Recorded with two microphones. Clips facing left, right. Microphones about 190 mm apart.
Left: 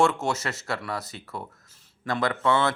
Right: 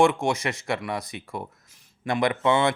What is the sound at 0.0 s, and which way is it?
A man's voice, 15° right (ahead or behind).